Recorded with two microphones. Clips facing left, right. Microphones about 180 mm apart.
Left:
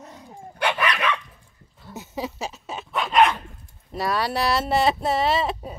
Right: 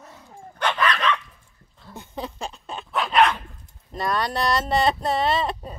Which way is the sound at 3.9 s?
5° left (ahead or behind).